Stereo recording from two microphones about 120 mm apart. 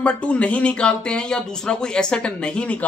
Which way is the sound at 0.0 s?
10° left (ahead or behind).